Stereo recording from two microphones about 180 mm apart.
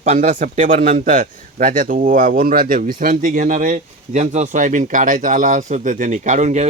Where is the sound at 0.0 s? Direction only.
45° right (ahead or behind).